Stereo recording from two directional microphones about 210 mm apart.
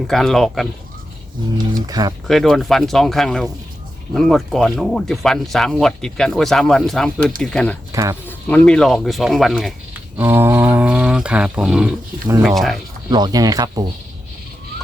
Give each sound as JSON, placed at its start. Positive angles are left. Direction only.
{"t": 0.1, "sound": "speech", "side_deg": 0}
{"t": 1.9, "sound": "speech", "side_deg": -20}
{"t": 2.2, "sound": "speech", "side_deg": 0}
{"t": 10.2, "sound": "speech", "side_deg": -10}
{"t": 13.1, "sound": "speech", "side_deg": -20}